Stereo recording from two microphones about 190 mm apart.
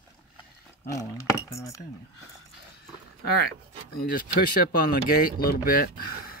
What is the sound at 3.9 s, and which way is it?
Speech, 50° left (ahead or behind).